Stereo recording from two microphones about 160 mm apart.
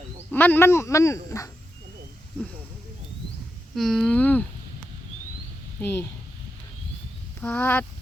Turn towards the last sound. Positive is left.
turn(degrees=10)  # may be behind; listen again after turning